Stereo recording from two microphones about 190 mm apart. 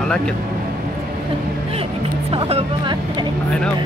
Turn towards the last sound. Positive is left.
turn(degrees=-25)  # may be behind; listen again after turning